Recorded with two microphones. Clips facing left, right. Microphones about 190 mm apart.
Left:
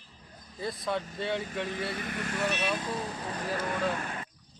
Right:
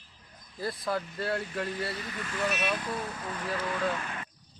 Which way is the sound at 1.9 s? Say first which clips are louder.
Left 3 dB; 55° left (ahead or behind).